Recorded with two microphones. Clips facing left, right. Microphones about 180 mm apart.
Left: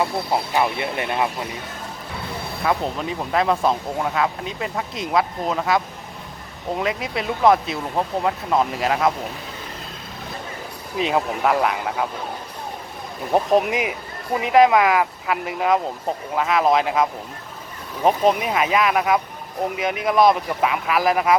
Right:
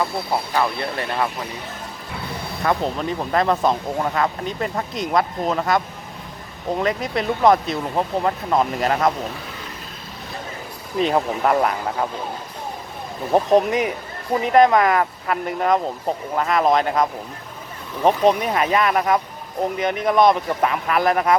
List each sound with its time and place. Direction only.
0.5 s speech: 15° left (ahead or behind)
2.6 s speech: 5° left (ahead or behind)
10.9 s speech: 5° left (ahead or behind)
13.3 s speech: 5° left (ahead or behind)